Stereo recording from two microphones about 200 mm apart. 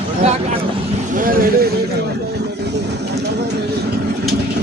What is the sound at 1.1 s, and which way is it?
Vehicle, 45° right (ahead or behind).